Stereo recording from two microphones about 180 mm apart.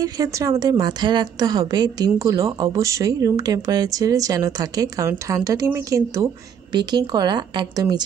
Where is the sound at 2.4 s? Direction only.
30° right (ahead or behind).